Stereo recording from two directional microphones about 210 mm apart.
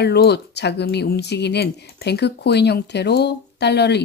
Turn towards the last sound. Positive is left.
turn(degrees=55)  # may be behind; listen again after turning